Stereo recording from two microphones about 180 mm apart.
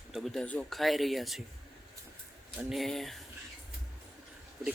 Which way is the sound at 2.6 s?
Centre (ahead or behind).